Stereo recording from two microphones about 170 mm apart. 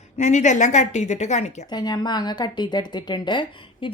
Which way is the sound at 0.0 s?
45° left (ahead or behind).